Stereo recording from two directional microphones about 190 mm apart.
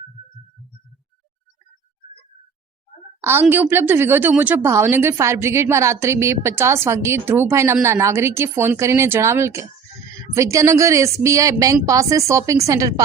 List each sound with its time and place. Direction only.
3.4 s speech: 10° right (ahead or behind)